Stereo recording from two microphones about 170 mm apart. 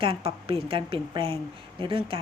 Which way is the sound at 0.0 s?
35° right (ahead or behind).